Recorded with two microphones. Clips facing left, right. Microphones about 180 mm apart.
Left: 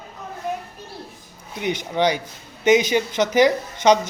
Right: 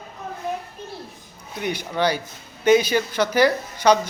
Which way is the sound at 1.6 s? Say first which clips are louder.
Left 2 dB; 20° left (ahead or behind).